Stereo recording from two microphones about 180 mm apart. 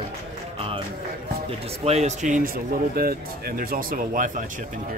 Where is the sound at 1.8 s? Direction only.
35° right (ahead or behind).